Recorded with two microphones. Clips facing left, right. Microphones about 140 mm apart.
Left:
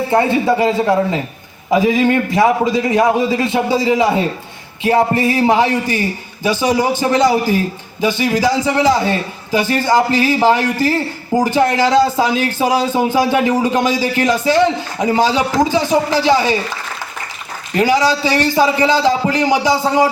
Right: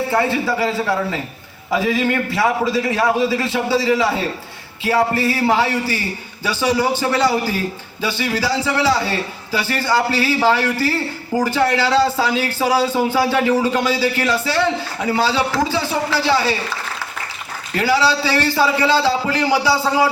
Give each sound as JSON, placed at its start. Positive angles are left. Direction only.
{"t": 0.1, "sound": "a man's voice", "side_deg": 20}
{"t": 17.7, "sound": "a man's voice", "side_deg": 15}